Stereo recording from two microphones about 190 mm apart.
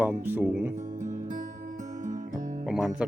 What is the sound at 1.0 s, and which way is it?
Music, 45° right (ahead or behind).